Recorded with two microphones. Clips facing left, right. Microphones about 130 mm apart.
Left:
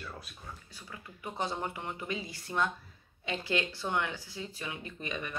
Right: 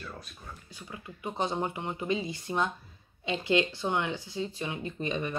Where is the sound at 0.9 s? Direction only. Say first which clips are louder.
Right 4 dB; 20° right (ahead or behind).